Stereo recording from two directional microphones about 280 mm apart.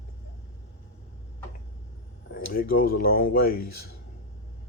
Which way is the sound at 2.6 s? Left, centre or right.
Left.